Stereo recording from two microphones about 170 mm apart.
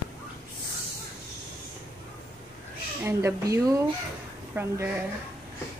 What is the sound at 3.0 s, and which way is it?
Speech, 15° right (ahead or behind).